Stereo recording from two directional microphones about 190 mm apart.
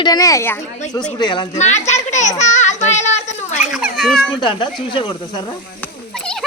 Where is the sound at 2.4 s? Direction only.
40° left (ahead or behind).